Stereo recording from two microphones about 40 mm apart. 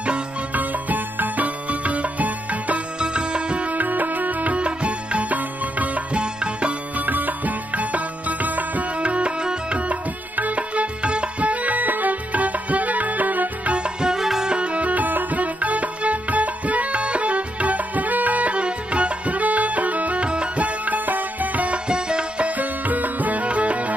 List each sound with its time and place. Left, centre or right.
0.5 s music: right
3.0 s music: right
3.7 s music: right
6.1 s music: right
7.1 s music: right
8.9 s music: right
9.8 s music: right
13.7 s music: right
14.1 s music: centre
14.5 s music: right
21.8 s music: right
22.6 s music: right